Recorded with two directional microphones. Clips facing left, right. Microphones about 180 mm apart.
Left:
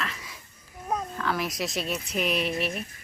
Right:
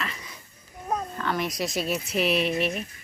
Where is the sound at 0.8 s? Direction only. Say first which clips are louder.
Right 1 dB; centre (ahead or behind).